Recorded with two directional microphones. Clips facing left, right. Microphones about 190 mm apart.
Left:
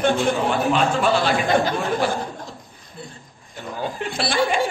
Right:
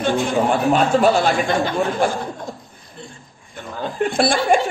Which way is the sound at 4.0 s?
50° right (ahead or behind).